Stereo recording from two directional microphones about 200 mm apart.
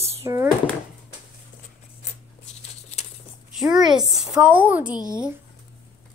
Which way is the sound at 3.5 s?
Centre (ahead or behind).